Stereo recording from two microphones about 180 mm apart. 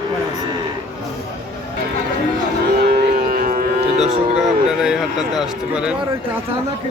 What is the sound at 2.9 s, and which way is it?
Music, 55° right (ahead or behind).